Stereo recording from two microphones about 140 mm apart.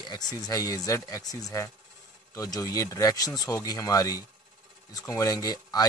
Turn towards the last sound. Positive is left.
turn(degrees=25)  # may be behind; listen again after turning